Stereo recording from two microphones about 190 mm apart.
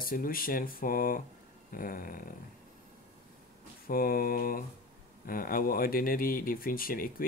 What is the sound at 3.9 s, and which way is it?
Speech, 50° left (ahead or behind).